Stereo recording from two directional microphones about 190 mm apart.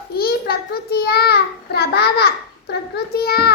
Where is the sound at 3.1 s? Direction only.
55° left (ahead or behind).